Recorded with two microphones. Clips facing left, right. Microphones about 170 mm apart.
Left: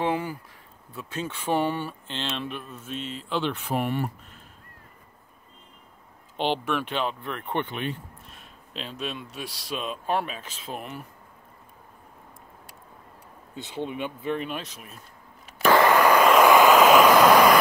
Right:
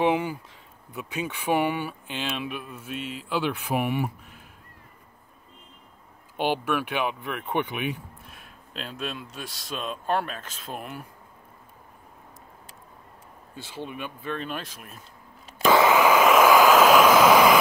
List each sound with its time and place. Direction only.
0.0 s speech: 20° right (ahead or behind)
6.3 s speech: 10° right (ahead or behind)
13.6 s speech: 20° left (ahead or behind)
14.5 s speech: centre (ahead or behind)
15.6 s vehicle: 10° right (ahead or behind)